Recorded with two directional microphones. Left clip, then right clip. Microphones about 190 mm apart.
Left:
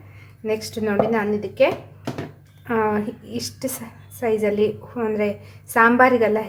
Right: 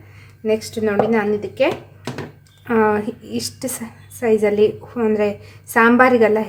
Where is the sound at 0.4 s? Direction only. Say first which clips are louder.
Right 4 dB; 15° right (ahead or behind).